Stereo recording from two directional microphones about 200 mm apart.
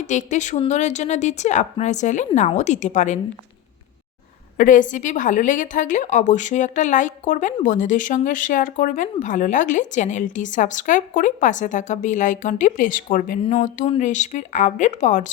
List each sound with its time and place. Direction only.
0.0 s speech: 35° left (ahead or behind)
4.5 s speech: 40° left (ahead or behind)
13.4 s speech: 30° left (ahead or behind)